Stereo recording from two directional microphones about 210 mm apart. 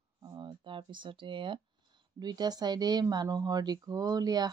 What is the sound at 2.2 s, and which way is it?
Speech, 20° right (ahead or behind).